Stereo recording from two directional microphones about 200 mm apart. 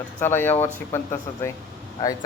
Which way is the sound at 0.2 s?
10° left (ahead or behind).